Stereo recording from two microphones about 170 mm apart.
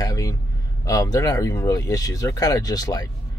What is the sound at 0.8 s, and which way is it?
Speech, 20° left (ahead or behind).